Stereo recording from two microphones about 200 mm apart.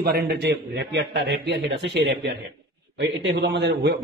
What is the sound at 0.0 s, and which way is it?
A man's voice, 55° right (ahead or behind).